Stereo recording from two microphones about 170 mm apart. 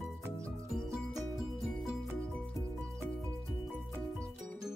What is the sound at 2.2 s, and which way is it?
Music, 5° left (ahead or behind).